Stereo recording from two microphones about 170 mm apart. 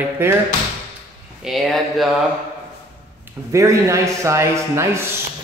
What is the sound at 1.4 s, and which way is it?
Speech, centre (ahead or behind).